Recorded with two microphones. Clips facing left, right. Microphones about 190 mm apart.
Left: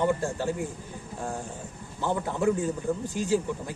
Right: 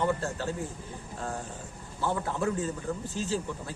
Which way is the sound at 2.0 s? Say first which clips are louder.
Left 2 dB; 15° left (ahead or behind).